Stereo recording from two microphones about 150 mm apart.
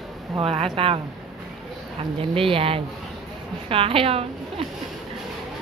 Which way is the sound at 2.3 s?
35° right (ahead or behind).